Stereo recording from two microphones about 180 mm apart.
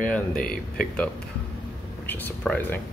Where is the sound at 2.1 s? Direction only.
10° left (ahead or behind).